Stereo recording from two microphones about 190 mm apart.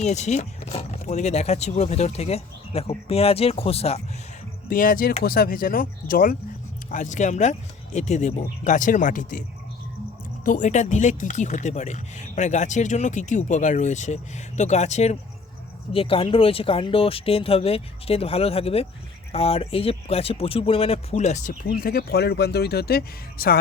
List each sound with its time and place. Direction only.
0.0 s speech: 35° left (ahead or behind)
4.7 s speech: 45° left (ahead or behind)
10.4 s speech: 40° left (ahead or behind)